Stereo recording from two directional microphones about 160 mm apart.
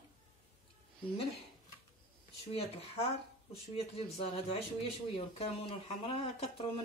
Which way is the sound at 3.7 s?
40° left (ahead or behind).